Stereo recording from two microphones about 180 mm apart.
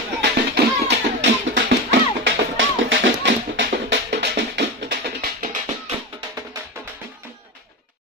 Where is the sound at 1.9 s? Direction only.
90° right; by 4.9 s 70° right (ahead or behind).